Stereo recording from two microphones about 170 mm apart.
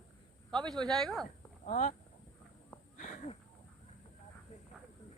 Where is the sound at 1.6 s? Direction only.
45° left (ahead or behind).